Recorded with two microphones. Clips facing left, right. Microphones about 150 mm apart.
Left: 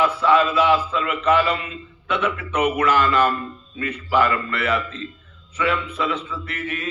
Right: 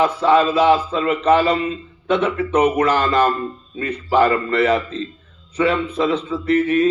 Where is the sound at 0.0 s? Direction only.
40° right (ahead or behind).